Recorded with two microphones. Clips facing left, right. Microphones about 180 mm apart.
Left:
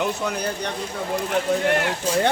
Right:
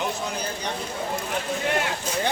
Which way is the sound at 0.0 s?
60° left (ahead or behind).